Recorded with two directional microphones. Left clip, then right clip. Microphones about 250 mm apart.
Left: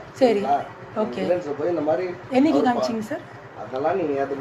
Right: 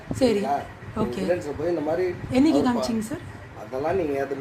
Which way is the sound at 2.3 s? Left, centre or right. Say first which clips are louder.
Left 3 dB; right.